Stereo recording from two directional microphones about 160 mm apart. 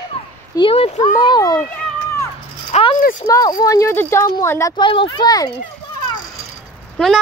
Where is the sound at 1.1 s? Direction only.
25° left (ahead or behind).